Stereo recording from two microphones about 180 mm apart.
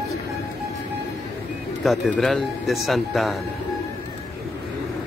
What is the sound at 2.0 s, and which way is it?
Speech, centre (ahead or behind).